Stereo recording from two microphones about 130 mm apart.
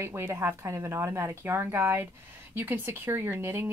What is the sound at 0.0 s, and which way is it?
Speech, 20° right (ahead or behind).